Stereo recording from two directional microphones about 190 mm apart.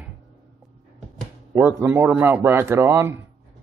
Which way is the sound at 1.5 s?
10° right (ahead or behind).